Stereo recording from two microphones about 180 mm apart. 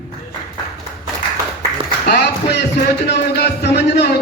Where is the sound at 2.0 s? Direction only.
60° left (ahead or behind).